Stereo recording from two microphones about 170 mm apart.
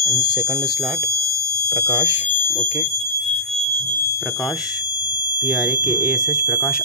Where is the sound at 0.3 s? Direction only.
20° right (ahead or behind).